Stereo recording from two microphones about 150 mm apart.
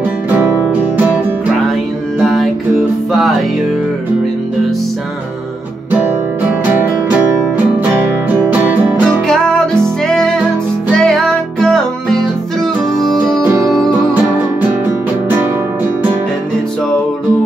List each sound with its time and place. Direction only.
3.1 s music: centre (ahead or behind)
7.5 s music: 15° right (ahead or behind)
9.3 s music: 5° left (ahead or behind)
13.5 s music: 20° right (ahead or behind)